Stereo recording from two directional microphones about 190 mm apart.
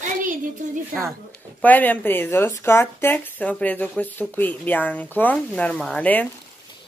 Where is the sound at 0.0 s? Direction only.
45° right (ahead or behind).